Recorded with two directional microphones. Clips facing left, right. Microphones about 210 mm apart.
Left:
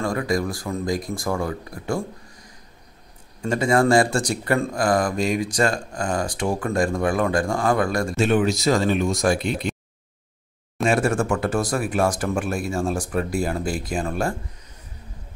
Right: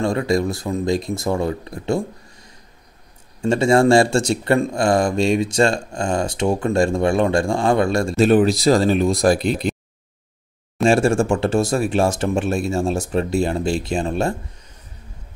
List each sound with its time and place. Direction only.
0.0 s speech: 25° right (ahead or behind)
3.4 s speech: 25° right (ahead or behind)
10.8 s speech: 30° right (ahead or behind)